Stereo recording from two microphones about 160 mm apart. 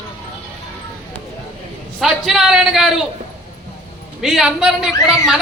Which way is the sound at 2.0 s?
Centre (ahead or behind).